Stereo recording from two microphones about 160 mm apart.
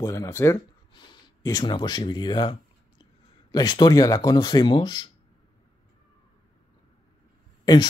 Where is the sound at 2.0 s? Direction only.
30° left (ahead or behind).